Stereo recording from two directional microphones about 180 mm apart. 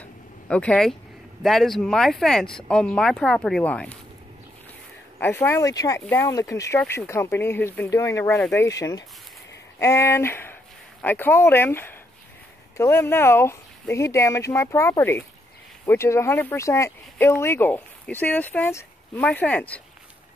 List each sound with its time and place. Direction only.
0.0 s vehicle: 5° left (ahead or behind)
1.4 s speech: centre (ahead or behind)
5.2 s speech: 10° left (ahead or behind)